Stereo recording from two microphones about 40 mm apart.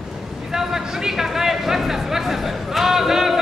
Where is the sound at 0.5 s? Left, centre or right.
Centre.